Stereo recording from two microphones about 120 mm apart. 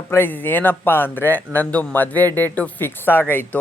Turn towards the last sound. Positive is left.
turn(degrees=15)  # may be behind; listen again after turning